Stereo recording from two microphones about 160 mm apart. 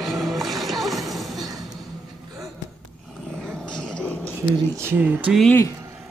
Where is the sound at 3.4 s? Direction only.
5° left (ahead or behind).